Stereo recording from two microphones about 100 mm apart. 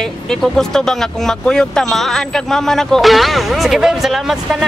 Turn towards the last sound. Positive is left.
turn(degrees=0)  # may be behind; listen again after turning